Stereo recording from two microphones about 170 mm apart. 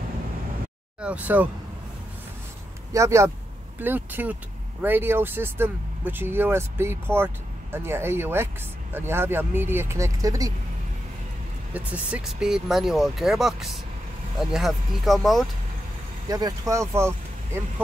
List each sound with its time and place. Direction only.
1.0 s speech: 10° right (ahead or behind)
2.9 s speech: 15° right (ahead or behind)
11.7 s speech: 5° right (ahead or behind)
16.3 s speech: 20° right (ahead or behind)